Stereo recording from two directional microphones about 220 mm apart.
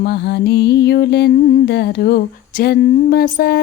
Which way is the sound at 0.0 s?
50° left (ahead or behind).